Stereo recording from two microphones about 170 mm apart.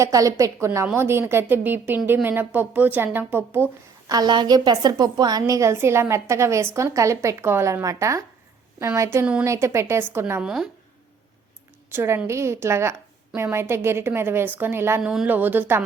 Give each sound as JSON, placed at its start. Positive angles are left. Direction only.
{"t": 0.0, "sound": "a woman's voice", "side_deg": -20}
{"t": 4.1, "sound": "a woman's voice", "side_deg": -25}
{"t": 10.4, "sound": "speech", "side_deg": -5}
{"t": 11.9, "sound": "a woman's voice", "side_deg": -15}